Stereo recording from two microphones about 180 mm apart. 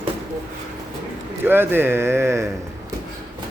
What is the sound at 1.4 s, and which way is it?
Speech, 10° right (ahead or behind).